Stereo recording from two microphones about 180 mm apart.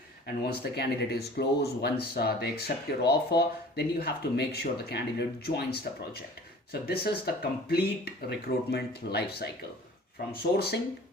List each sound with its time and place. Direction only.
0.4 s speech: 60° left (ahead or behind)